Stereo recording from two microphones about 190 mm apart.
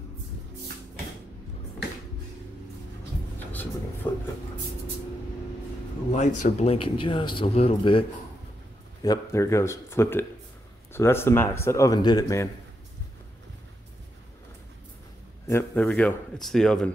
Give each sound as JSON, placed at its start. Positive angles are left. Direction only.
{"t": 4.1, "sound": "speech", "side_deg": 10}
{"t": 6.1, "sound": "speech", "side_deg": 40}
{"t": 9.0, "sound": "speech", "side_deg": 20}
{"t": 15.4, "sound": "speech", "side_deg": 10}